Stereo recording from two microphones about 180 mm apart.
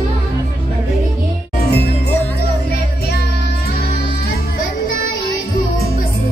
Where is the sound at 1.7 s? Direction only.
60° left (ahead or behind).